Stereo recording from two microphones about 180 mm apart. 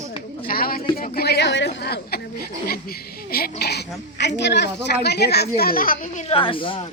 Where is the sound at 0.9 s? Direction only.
55° left (ahead or behind).